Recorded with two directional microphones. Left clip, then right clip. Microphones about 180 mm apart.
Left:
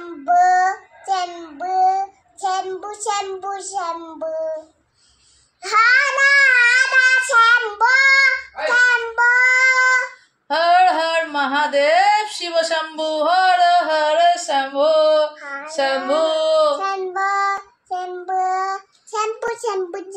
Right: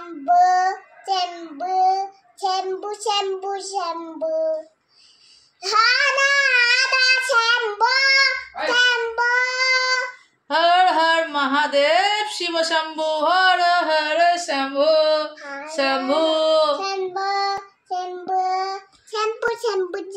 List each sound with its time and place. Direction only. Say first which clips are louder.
0.2 s child singing: left 2 dB; 10° right (ahead or behind)
5.7 s child singing: left 3 dB; 10° right (ahead or behind)
8.6 s child singing: left 3 dB; 10° left (ahead or behind)
9.0 s child singing: left 5 dB; 10° right (ahead or behind)
10.5 s a sound: left 2 dB; 20° right (ahead or behind)
15.6 s child singing: left 1 dB; 15° right (ahead or behind)
16.7 s child singing: left 3 dB; centre (ahead or behind)